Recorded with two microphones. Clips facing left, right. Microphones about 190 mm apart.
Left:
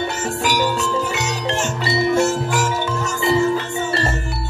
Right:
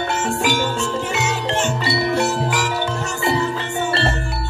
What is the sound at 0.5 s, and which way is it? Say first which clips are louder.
Music: left 1 dB; 40° left (ahead or behind).